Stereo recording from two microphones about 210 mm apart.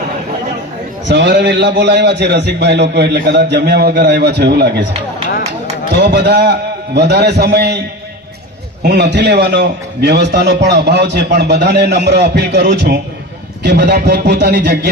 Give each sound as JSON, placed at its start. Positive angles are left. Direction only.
{"t": 1.0, "sound": "a man's voice", "side_deg": -55}
{"t": 6.0, "sound": "a man's voice", "side_deg": -50}
{"t": 8.8, "sound": "a man's voice", "side_deg": -55}